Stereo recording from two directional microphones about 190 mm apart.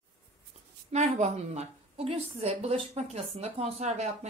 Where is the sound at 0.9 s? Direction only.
40° right (ahead or behind).